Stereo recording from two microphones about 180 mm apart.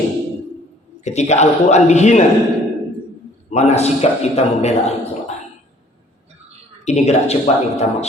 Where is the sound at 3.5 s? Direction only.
35° left (ahead or behind).